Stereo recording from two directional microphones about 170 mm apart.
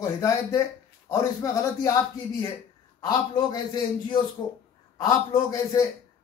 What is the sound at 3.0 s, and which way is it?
Speech, 25° left (ahead or behind).